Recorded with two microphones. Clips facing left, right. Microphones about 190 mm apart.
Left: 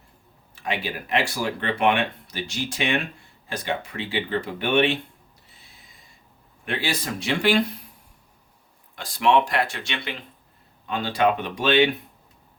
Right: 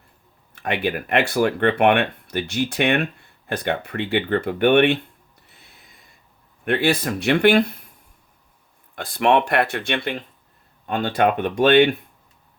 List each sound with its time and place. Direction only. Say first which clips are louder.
0.5 s speech: right 6 dB; 60° right (ahead or behind)
5.5 s owl: right 2 dB; 60° right (ahead or behind)
6.7 s speech: right 8 dB; 60° right (ahead or behind)
9.0 s speech: right 2 dB; 55° right (ahead or behind)